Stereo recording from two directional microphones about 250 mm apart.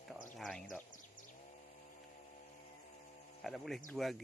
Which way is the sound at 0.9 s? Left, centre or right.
Left.